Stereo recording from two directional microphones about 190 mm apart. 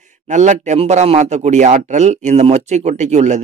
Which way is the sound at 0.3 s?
40° right (ahead or behind).